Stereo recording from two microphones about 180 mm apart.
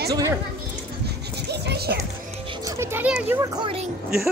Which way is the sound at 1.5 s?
65° right (ahead or behind).